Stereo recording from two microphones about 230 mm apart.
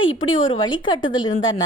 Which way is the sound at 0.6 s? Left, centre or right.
Centre.